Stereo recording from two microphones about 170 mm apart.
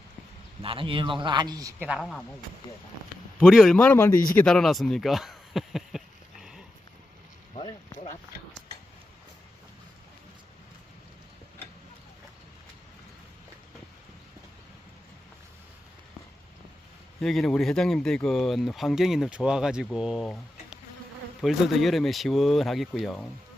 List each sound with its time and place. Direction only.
0.6 s a man's voice: 30° right (ahead or behind)
1.8 s speech: 5° right (ahead or behind)
3.4 s speech: centre (ahead or behind)
6.4 s dog: 5° right (ahead or behind)
17.2 s speech: 5° left (ahead or behind)